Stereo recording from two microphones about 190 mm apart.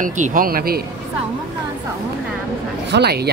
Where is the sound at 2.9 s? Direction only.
60° right (ahead or behind).